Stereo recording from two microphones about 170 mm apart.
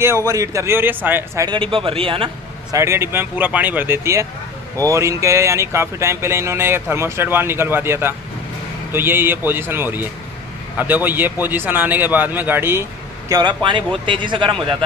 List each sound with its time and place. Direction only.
0.3 s speech: 20° right (ahead or behind)
1.5 s a man's voice: 30° right (ahead or behind)
2.7 s speech: 15° right (ahead or behind)
13.3 s speech: 25° right (ahead or behind)